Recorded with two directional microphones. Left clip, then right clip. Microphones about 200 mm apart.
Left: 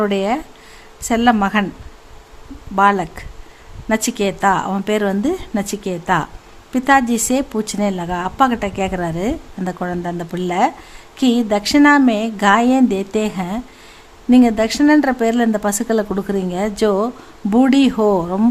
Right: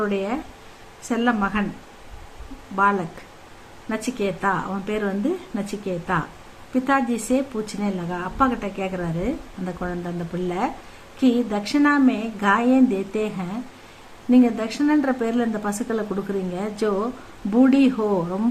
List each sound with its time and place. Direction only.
0.0 s a woman's voice: 50° left (ahead or behind)
2.7 s a woman's voice: 50° left (ahead or behind)